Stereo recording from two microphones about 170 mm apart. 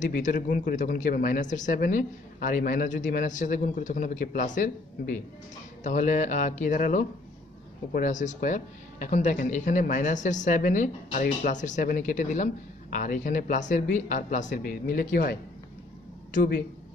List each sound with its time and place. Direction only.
0.0 s speech: 50° left (ahead or behind)
16.3 s speech: 60° left (ahead or behind)